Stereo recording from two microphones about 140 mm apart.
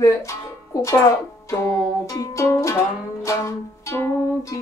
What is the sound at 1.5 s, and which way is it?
Music, 20° left (ahead or behind).